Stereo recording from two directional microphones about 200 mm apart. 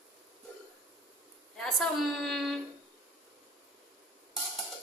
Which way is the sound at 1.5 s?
Centre (ahead or behind).